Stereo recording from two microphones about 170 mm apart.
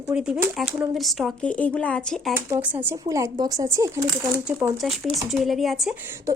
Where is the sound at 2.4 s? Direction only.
15° right (ahead or behind).